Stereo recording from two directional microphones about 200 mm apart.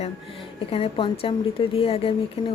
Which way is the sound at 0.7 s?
25° left (ahead or behind).